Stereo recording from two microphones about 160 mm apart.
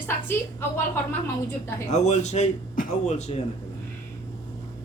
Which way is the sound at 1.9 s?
45° left (ahead or behind).